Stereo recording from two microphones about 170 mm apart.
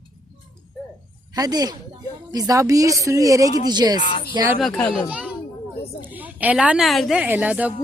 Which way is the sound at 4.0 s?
30° left (ahead or behind).